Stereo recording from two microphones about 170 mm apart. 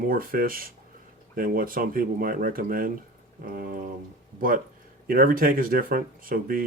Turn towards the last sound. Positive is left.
turn(degrees=-55)  # may be behind; listen again after turning